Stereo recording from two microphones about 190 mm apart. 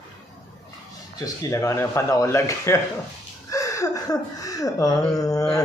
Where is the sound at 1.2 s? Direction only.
15° left (ahead or behind).